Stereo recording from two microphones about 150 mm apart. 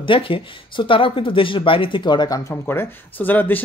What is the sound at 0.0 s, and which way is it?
Speech, 35° left (ahead or behind).